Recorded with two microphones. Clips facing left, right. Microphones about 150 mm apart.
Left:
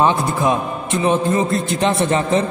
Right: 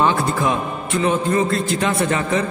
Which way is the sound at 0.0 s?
20° left (ahead or behind).